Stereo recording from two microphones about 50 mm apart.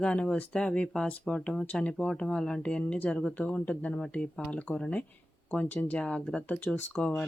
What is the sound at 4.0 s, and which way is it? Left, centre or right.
A woman's voice, centre.